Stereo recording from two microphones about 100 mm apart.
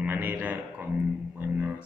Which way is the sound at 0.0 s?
20° right (ahead or behind).